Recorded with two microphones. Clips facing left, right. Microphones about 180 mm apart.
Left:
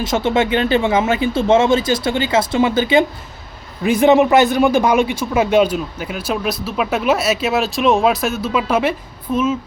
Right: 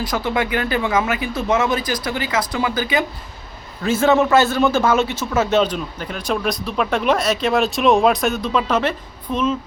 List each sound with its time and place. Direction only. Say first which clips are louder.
0.0 s a man's voice: left 4 dB; 25° left (ahead or behind); by 9.6 s 5° left (ahead or behind)